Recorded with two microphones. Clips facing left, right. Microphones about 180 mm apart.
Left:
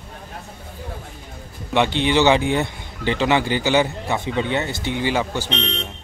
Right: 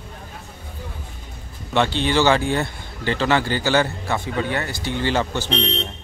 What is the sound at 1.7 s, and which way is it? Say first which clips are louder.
Speech: left 1 dB; 15° left (ahead or behind).